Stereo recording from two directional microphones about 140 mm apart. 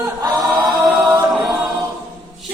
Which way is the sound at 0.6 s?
5° right (ahead or behind).